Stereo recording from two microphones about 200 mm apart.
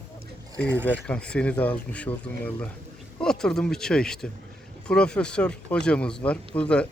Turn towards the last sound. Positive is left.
turn(degrees=5)  # may be behind; listen again after turning